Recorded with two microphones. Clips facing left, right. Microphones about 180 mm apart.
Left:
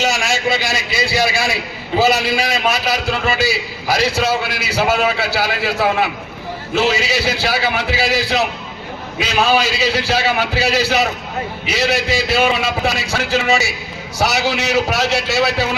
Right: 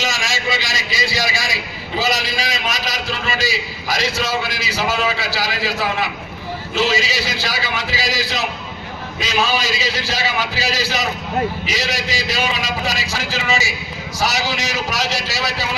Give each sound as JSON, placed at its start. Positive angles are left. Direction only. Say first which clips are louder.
{"t": 0.0, "sound": "a man's voice", "louder": "left 5 dB", "side_deg": 60}